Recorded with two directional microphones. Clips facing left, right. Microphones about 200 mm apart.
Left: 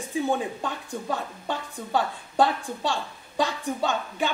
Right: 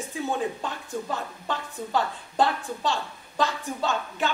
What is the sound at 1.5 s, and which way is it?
A woman's voice, 10° left (ahead or behind).